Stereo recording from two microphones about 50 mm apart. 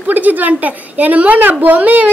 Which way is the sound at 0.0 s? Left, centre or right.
Right.